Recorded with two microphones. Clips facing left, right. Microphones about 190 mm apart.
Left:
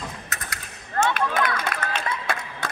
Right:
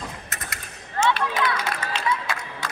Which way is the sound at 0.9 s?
50° left (ahead or behind).